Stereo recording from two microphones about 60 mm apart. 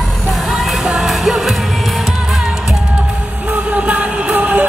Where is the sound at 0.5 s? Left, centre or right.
Centre.